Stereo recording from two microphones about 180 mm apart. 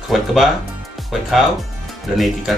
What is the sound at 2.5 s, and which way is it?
Speech, centre (ahead or behind).